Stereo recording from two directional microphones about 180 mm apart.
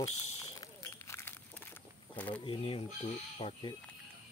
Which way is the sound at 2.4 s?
30° left (ahead or behind).